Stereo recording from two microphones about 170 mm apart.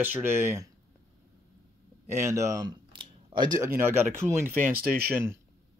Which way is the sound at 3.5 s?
15° right (ahead or behind).